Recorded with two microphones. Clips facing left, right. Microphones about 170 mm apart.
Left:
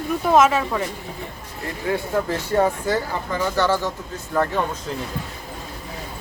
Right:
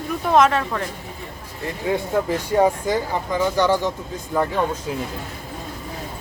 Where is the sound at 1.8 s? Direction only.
15° right (ahead or behind).